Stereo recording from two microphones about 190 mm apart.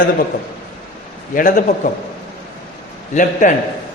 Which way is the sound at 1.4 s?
45° left (ahead or behind).